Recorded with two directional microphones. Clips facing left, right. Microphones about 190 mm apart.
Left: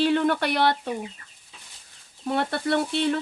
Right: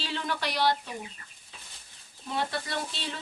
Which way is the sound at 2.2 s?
60° left (ahead or behind).